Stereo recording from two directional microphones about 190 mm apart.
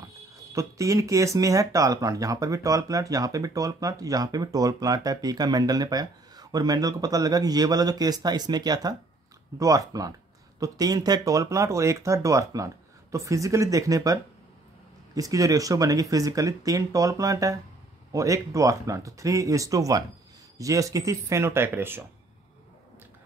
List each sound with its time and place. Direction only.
0.5 s speech: 15° right (ahead or behind)